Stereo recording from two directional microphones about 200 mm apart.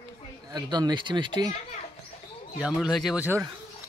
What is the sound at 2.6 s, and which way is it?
Speech, centre (ahead or behind).